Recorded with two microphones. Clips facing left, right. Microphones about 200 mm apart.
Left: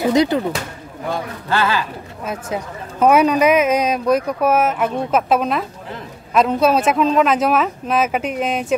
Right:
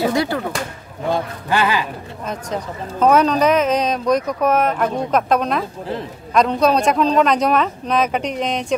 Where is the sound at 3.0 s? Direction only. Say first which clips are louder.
Left 1 dB; 10° left (ahead or behind).